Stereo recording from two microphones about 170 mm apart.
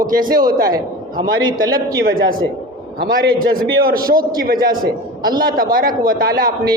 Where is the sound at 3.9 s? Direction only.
60° right (ahead or behind).